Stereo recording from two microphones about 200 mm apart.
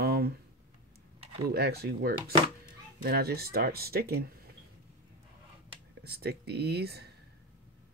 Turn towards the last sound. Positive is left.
turn(degrees=-55)  # may be behind; listen again after turning